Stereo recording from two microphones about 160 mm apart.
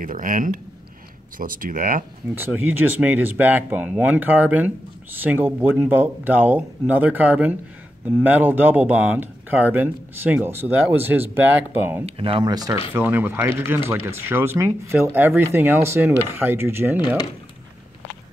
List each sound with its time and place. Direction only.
0.0 s speech: 55° right (ahead or behind)
2.3 s speech: 10° right (ahead or behind)
12.2 s speech: 35° right (ahead or behind); by 17.0 s 15° right (ahead or behind)